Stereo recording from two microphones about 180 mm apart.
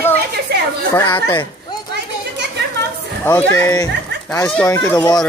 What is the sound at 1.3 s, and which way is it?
Children playing, 25° left (ahead or behind).